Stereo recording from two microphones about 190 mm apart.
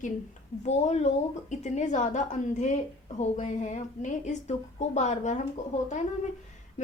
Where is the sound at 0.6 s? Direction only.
35° left (ahead or behind).